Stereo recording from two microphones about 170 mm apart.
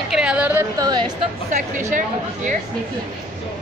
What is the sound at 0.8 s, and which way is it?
Speech, 25° right (ahead or behind).